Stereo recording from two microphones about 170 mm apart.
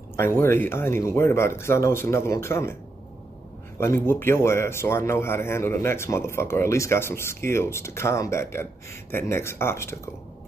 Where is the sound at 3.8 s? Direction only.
15° left (ahead or behind).